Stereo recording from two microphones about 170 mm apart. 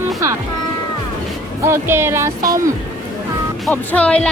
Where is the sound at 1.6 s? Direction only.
15° right (ahead or behind).